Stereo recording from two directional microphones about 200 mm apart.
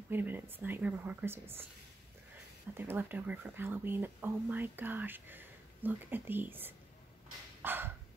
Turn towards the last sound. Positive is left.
turn(degrees=-10)  # may be behind; listen again after turning